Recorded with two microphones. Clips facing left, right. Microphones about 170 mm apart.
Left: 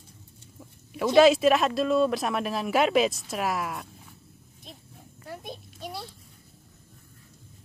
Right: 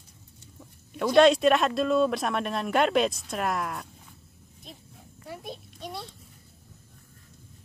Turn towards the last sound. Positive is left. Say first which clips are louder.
# even
turn(degrees=0)  # may be behind; listen again after turning